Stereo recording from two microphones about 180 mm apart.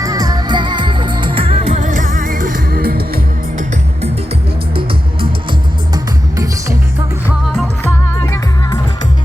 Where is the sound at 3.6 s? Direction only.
40° right (ahead or behind).